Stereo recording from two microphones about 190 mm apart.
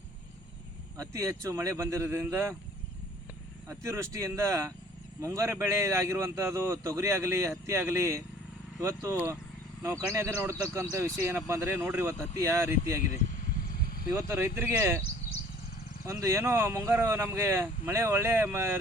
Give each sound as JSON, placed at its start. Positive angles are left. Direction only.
{"t": 0.9, "sound": "a man's voice", "side_deg": -15}
{"t": 3.7, "sound": "a man's voice", "side_deg": -15}
{"t": 13.7, "sound": "vehicle", "side_deg": 50}
{"t": 14.2, "sound": "a man's voice", "side_deg": -15}
{"t": 16.0, "sound": "a man's voice", "side_deg": -15}